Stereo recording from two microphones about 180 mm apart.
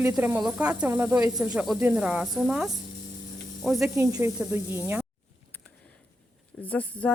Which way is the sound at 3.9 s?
20° right (ahead or behind).